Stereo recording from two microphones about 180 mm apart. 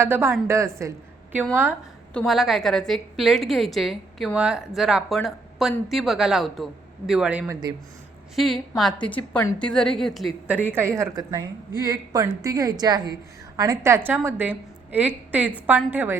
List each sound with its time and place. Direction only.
0.0 s a woman's voice: 10° right (ahead or behind)
2.1 s a woman's voice: centre (ahead or behind)